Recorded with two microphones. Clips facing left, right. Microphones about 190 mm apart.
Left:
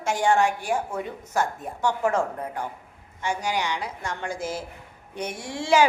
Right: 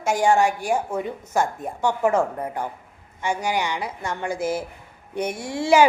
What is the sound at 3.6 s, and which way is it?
A woman's voice, 10° right (ahead or behind).